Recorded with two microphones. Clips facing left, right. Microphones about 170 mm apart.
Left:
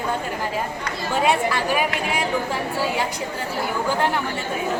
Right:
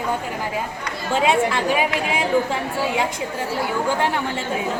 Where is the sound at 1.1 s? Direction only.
20° right (ahead or behind).